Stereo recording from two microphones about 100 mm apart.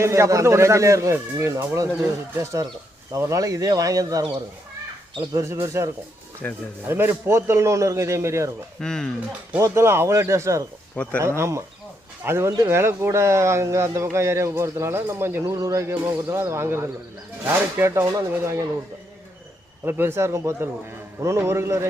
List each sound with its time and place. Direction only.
0.0 s speech: 30° right (ahead or behind)
5.3 s speech: 30° right (ahead or behind)
6.4 s speech: 15° left (ahead or behind)
6.8 s speech: 20° right (ahead or behind)
8.8 s speech: 5° left (ahead or behind)
9.6 s speech: 25° right (ahead or behind)
10.9 s speech: 15° left (ahead or behind)
11.2 s speech: 30° right (ahead or behind)
19.8 s speech: 20° right (ahead or behind)